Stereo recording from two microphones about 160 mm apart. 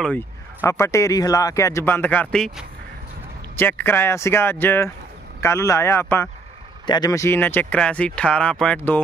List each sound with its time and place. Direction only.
0.0 s speech: 10° left (ahead or behind)